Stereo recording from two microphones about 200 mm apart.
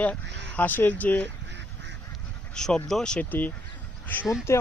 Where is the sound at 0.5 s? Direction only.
10° left (ahead or behind).